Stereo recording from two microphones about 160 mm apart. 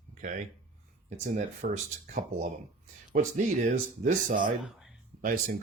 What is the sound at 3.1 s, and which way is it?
Speech, 50° right (ahead or behind).